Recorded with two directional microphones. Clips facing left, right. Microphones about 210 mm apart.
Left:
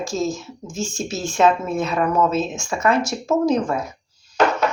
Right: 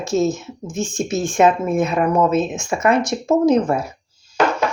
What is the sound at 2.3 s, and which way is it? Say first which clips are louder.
Speech: right 4 dB; centre (ahead or behind).